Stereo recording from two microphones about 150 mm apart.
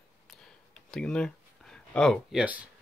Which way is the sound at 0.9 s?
5° left (ahead or behind).